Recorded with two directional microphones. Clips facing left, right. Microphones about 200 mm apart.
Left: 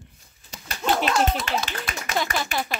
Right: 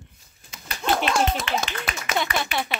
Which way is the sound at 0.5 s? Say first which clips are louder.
Even; 40° left (ahead or behind).